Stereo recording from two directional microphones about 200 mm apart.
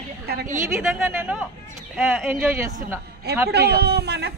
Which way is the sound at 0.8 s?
10° right (ahead or behind).